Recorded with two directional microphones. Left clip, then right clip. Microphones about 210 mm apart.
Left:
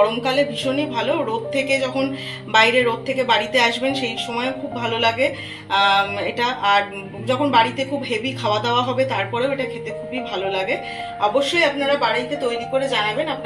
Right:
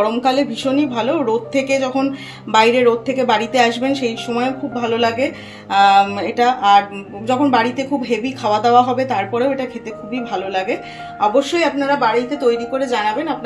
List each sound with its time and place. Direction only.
0.1 s a woman's voice: 50° right (ahead or behind)